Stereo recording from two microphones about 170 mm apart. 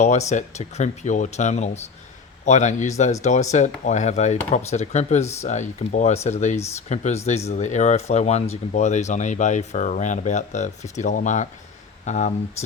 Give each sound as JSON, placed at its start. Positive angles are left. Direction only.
{"t": 0.0, "sound": "speech", "side_deg": 40}